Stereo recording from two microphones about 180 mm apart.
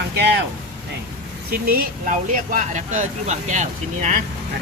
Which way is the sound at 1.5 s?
55° right (ahead or behind).